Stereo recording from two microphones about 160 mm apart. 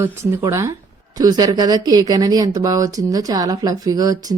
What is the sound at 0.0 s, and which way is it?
Speech, 15° right (ahead or behind).